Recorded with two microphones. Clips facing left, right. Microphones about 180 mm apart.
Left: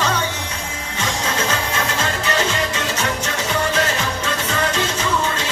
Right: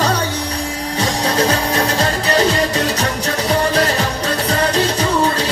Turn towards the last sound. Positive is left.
turn(degrees=-35)  # may be behind; listen again after turning